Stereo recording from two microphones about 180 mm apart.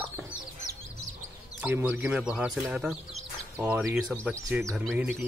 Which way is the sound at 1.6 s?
10° right (ahead or behind).